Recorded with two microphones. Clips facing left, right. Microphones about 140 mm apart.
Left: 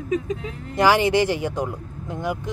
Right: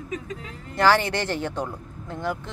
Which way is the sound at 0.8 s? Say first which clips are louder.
Left 3 dB; 15° left (ahead or behind).